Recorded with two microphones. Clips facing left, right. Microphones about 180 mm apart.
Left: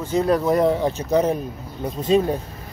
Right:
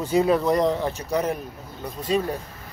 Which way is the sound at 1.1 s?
25° left (ahead or behind).